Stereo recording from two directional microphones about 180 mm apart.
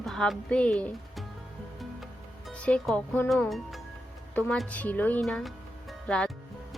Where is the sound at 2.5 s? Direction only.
5° left (ahead or behind).